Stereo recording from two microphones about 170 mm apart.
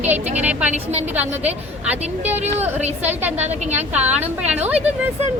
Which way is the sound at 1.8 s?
10° right (ahead or behind).